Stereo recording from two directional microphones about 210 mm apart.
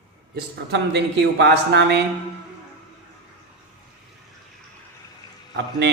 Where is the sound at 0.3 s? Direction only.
55° right (ahead or behind).